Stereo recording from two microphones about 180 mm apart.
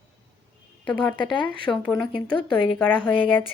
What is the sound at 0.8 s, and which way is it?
A woman's voice, 5° left (ahead or behind).